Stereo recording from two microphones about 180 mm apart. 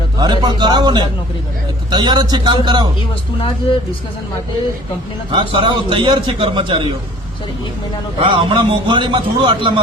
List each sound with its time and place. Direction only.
0.2 s a man's voice: 25° right (ahead or behind)
5.3 s a man's voice: 25° right (ahead or behind)
8.2 s a man's voice: 25° right (ahead or behind)